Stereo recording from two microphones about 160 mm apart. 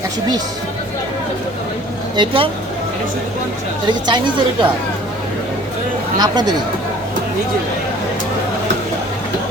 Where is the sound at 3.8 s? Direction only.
30° right (ahead or behind).